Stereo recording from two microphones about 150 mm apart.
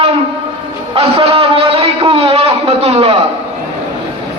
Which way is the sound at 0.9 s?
40° right (ahead or behind).